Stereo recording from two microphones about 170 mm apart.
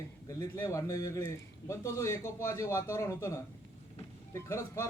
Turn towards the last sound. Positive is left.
turn(degrees=15)  # may be behind; listen again after turning